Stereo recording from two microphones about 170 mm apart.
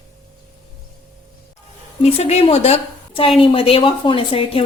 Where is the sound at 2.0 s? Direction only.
40° left (ahead or behind).